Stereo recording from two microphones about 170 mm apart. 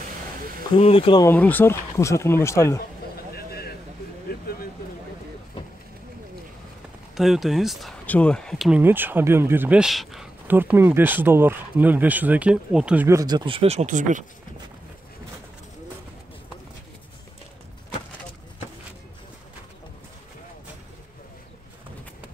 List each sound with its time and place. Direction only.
0.7 s speech: 35° left (ahead or behind)
1.2 s speech: 10° left (ahead or behind)
3.3 s a sound: 65° left (ahead or behind)
7.2 s speech: centre (ahead or behind); by 14.2 s 50° right (ahead or behind)